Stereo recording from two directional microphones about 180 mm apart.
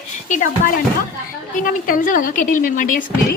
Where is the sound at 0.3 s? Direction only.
45° left (ahead or behind).